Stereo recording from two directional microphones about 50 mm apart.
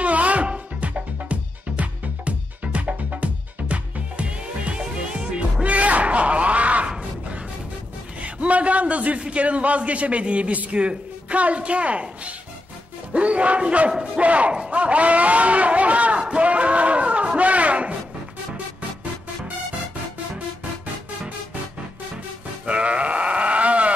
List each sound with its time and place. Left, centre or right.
0.0 s music: right
6.9 s a sound: right
8.2 s a man's voice: right
22.7 s sheep: right